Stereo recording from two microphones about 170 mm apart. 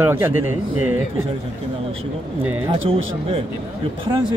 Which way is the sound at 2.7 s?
35° right (ahead or behind).